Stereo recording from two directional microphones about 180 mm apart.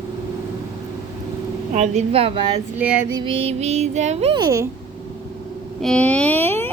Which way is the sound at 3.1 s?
30° right (ahead or behind).